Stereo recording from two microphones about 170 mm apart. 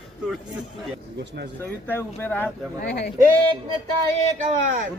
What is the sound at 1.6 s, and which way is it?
Speech, 10° left (ahead or behind).